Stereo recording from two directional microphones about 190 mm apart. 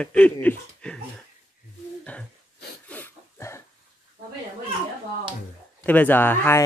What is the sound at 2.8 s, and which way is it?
Dog, 10° left (ahead or behind).